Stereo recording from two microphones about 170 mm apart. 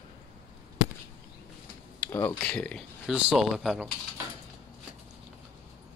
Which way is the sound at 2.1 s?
10° left (ahead or behind).